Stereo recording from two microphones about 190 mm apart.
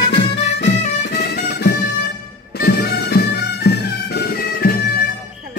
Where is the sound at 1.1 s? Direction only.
60° left (ahead or behind).